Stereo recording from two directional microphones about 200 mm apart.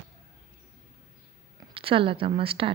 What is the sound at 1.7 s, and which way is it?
Speech, 25° right (ahead or behind).